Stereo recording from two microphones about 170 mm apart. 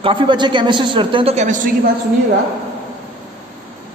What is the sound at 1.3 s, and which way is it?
Speech, 45° right (ahead or behind).